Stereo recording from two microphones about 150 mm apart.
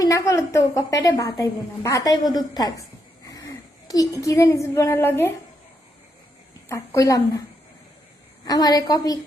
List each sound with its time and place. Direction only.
0.0 s a woman's voice: 20° left (ahead or behind)
6.7 s a woman's voice: 20° left (ahead or behind)
8.4 s a woman's voice: 25° left (ahead or behind)